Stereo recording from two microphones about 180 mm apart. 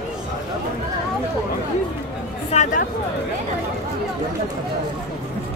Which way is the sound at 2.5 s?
45° left (ahead or behind).